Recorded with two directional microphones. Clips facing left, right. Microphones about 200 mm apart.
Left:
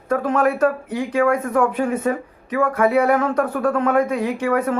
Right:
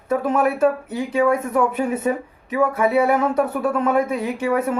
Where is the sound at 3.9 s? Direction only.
25° right (ahead or behind).